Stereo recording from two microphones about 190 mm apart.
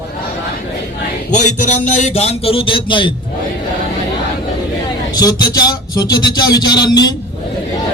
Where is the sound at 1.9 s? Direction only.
35° left (ahead or behind).